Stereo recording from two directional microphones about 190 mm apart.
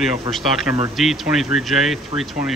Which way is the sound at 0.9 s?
Centre (ahead or behind).